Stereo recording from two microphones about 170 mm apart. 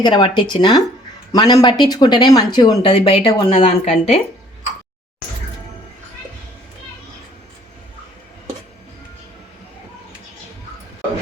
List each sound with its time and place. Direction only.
0.0 s speech: 25° left (ahead or behind)